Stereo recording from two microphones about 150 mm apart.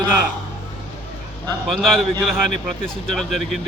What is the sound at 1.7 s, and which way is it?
Speech, centre (ahead or behind).